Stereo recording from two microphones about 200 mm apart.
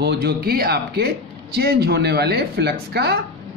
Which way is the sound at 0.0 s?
55° right (ahead or behind).